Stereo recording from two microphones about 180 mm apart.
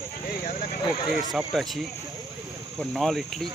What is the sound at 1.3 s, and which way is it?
Speech, centre (ahead or behind).